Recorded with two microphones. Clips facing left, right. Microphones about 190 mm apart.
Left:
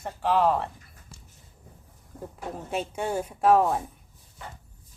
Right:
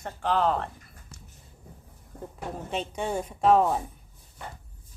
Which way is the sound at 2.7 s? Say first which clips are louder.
Left 1 dB; 10° left (ahead or behind).